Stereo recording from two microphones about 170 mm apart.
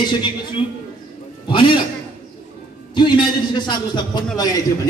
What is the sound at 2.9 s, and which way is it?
A man's voice, 25° left (ahead or behind).